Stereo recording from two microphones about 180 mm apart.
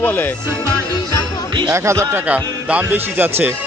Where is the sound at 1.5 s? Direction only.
20° right (ahead or behind).